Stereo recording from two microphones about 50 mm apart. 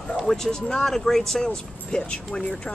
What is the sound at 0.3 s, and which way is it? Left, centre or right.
Speech, centre.